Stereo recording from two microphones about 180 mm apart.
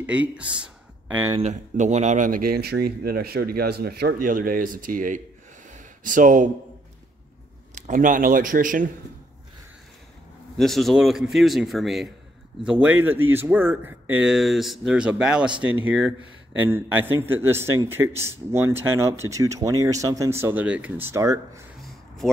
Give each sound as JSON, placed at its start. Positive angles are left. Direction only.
{"t": 0.0, "sound": "speech", "side_deg": -5}
{"t": 1.4, "sound": "speech", "side_deg": -40}
{"t": 5.7, "sound": "a sound", "side_deg": -45}
{"t": 7.7, "sound": "speech", "side_deg": -45}
{"t": 10.6, "sound": "a man's voice", "side_deg": 0}